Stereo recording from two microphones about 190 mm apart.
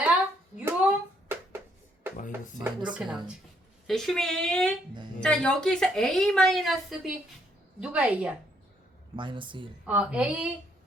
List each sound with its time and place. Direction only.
0.6 s a sound: 10° right (ahead or behind)
2.1 s music: 45° left (ahead or behind)
2.6 s speech: 20° right (ahead or behind)
2.9 s a woman's voice: 5° right (ahead or behind)
9.1 s speech: 25° right (ahead or behind)
9.8 s a woman's voice: 5° right (ahead or behind)